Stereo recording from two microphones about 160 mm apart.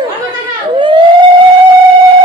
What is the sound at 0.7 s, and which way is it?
Emergency vehicle, 30° right (ahead or behind).